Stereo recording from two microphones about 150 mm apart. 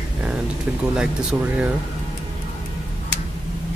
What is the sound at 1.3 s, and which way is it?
Speech, 10° right (ahead or behind).